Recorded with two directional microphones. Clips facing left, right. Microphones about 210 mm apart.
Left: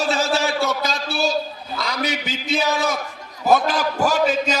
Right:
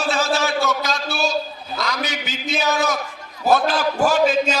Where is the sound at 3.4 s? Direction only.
15° left (ahead or behind).